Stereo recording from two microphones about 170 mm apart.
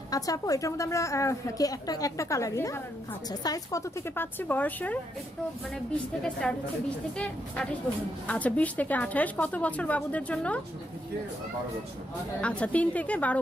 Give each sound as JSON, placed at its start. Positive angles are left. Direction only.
{"t": 0.1, "sound": "a woman's voice", "side_deg": 20}
{"t": 6.4, "sound": "a woman's voice", "side_deg": 5}
{"t": 12.4, "sound": "a woman's voice", "side_deg": 5}